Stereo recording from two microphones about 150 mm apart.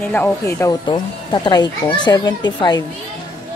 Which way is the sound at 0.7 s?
30° left (ahead or behind).